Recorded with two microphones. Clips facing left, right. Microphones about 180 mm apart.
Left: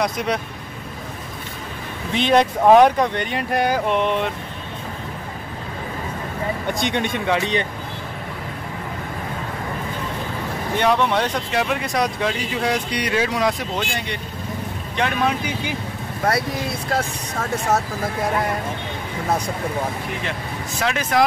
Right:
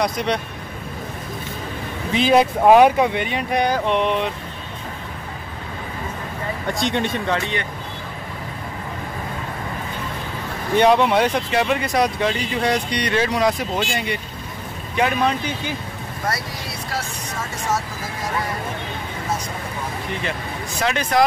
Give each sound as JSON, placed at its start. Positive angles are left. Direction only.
{"t": 0.0, "sound": "speech", "side_deg": 5}
{"t": 2.1, "sound": "speech", "side_deg": -5}
{"t": 6.7, "sound": "speech", "side_deg": 0}
{"t": 7.2, "sound": "speech", "side_deg": 15}
{"t": 10.8, "sound": "speech", "side_deg": -15}
{"t": 11.5, "sound": "speech", "side_deg": 0}
{"t": 16.3, "sound": "speech", "side_deg": 55}
{"t": 20.8, "sound": "speech", "side_deg": 0}